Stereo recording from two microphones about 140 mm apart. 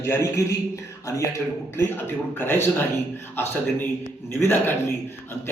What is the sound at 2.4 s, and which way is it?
Speech, 15° left (ahead or behind).